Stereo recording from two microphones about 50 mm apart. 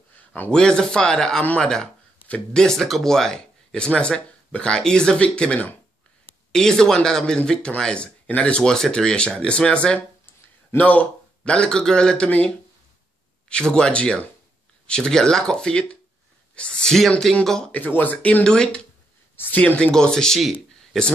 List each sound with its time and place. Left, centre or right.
0.5 s speech: centre
6.5 s speech: centre
17.3 s speech: centre
17.7 s speech: left
18.4 s speech: centre
19.3 s speech: left
19.8 s speech: centre